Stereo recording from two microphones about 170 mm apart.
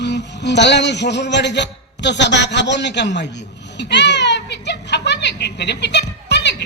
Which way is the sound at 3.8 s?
90° left.